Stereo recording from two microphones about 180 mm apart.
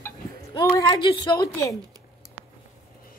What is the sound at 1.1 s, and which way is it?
Speech, 20° left (ahead or behind).